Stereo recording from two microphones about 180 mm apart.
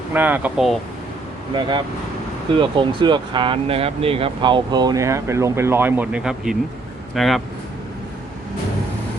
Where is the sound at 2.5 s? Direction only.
25° right (ahead or behind); by 7.4 s centre (ahead or behind).